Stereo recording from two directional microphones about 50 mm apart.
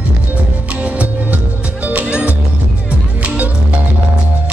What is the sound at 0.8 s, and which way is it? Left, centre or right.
Music, right.